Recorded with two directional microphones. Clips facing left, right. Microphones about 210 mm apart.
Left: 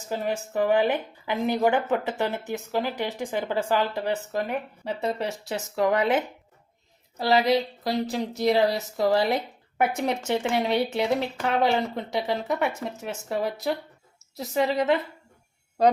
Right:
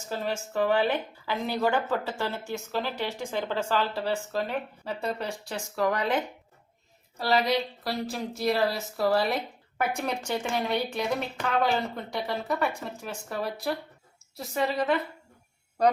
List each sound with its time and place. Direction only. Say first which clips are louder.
0.1 s a woman's voice: left 3 dB; 15° left (ahead or behind)
7.2 s a woman's voice: left 4 dB; 20° left (ahead or behind)